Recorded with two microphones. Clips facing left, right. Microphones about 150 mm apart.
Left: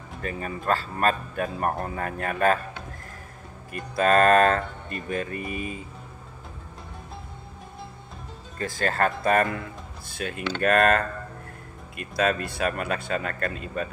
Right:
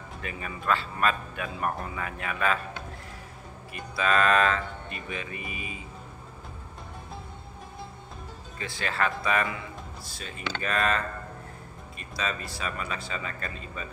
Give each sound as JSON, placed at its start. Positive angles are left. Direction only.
{"t": 0.2, "sound": "a man's voice", "side_deg": 40}
{"t": 3.9, "sound": "a man's voice", "side_deg": 45}
{"t": 5.4, "sound": "speech", "side_deg": -5}
{"t": 8.5, "sound": "a man's voice", "side_deg": 45}